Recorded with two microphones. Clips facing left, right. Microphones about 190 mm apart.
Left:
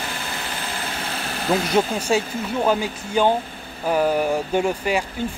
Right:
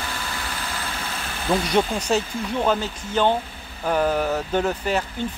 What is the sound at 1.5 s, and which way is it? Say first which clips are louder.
Speech: left 1 dB; 5° left (ahead or behind).